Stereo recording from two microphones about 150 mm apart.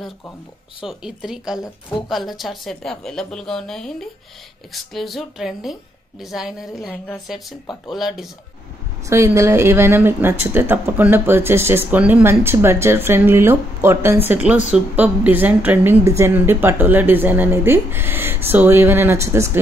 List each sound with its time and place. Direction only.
0.8 s a woman's voice: 5° right (ahead or behind)
7.9 s a woman's voice: centre (ahead or behind)
9.0 s speech: 20° right (ahead or behind)